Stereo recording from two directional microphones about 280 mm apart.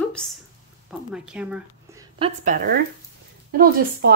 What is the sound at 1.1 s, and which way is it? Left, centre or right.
Speech, centre.